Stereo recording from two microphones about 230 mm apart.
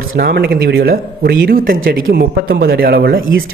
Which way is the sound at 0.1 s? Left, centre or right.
Right.